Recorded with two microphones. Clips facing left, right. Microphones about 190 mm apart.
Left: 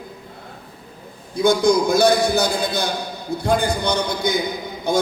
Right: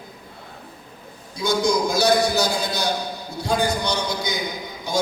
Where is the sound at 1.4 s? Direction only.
55° left (ahead or behind).